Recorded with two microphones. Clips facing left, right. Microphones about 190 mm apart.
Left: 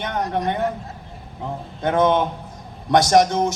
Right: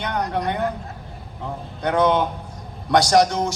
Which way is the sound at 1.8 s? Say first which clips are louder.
Left 1 dB; 20° left (ahead or behind).